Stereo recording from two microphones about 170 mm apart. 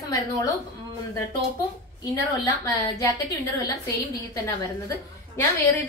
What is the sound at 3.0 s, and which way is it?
Speech, 20° left (ahead or behind).